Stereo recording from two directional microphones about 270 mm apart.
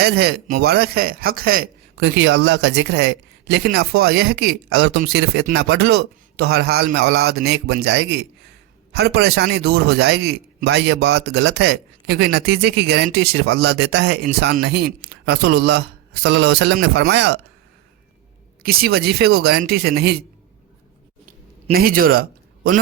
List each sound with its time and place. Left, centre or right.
0.0 s speech: right
18.6 s speech: right
21.2 s a sound: right